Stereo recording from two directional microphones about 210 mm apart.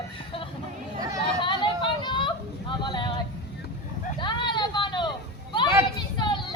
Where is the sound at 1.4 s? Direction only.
20° left (ahead or behind).